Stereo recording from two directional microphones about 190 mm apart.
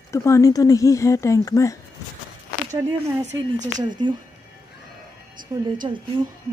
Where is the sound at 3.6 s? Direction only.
40° right (ahead or behind).